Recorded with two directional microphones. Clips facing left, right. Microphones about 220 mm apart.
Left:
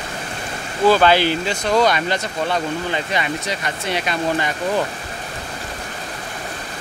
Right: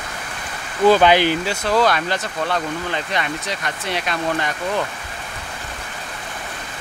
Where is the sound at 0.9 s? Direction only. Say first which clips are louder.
Right 1 dB; 15° right (ahead or behind).